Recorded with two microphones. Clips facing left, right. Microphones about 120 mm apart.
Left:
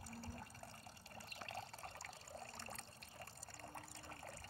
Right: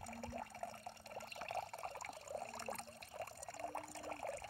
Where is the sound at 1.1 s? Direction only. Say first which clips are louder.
Right 6 dB; 55° right (ahead or behind).